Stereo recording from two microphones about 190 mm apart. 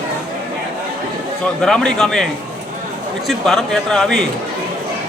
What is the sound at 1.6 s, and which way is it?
Speech, 5° left (ahead or behind).